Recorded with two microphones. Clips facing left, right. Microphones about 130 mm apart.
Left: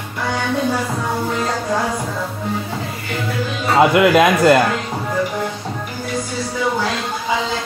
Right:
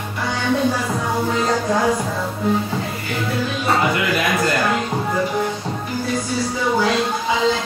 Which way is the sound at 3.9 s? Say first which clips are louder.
Left 8 dB; 90° left.